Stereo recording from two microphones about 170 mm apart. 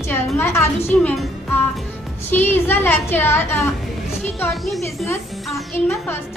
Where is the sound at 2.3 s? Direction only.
10° left (ahead or behind).